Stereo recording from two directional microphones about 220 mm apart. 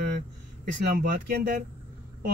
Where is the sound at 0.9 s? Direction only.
40° right (ahead or behind).